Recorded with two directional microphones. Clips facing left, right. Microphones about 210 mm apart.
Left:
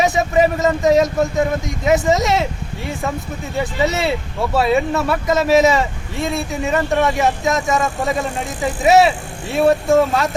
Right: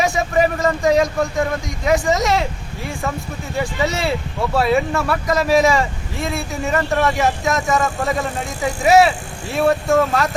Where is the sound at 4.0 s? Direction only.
Centre (ahead or behind).